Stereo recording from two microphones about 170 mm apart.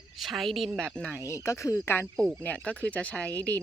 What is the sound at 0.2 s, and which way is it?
A woman's voice, centre (ahead or behind).